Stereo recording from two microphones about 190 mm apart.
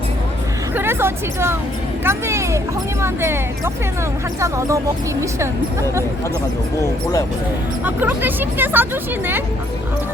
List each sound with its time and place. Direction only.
0.8 s speech: 10° right (ahead or behind)
7.9 s speech: 10° right (ahead or behind)